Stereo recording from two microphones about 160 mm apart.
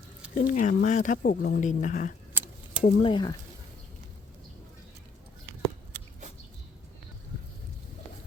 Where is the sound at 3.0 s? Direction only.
30° left (ahead or behind).